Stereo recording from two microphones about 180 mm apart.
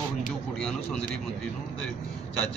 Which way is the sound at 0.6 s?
5° left (ahead or behind).